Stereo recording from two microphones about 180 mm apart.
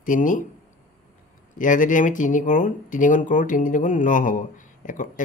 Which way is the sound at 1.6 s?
45° left (ahead or behind).